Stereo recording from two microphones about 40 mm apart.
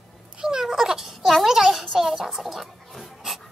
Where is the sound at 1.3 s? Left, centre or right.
Centre.